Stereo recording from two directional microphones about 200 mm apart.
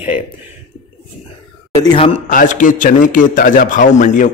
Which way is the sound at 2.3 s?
40° left (ahead or behind).